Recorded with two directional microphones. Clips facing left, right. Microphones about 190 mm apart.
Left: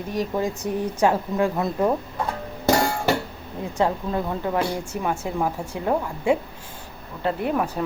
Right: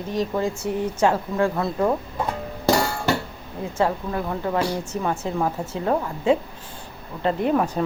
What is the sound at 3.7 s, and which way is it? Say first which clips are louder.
Speech: even; 20° left (ahead or behind).